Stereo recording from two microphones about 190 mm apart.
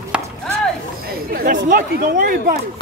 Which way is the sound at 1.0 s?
50° right (ahead or behind).